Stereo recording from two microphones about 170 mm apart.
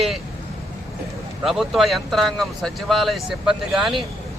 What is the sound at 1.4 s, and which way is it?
Speech, centre (ahead or behind).